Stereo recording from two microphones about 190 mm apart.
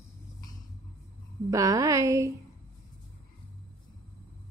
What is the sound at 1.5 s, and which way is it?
Speech, 20° right (ahead or behind).